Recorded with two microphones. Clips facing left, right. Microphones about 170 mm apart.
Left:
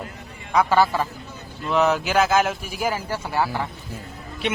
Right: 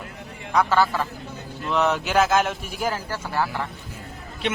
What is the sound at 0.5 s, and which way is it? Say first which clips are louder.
Speech: left 2 dB; 10° left (ahead or behind).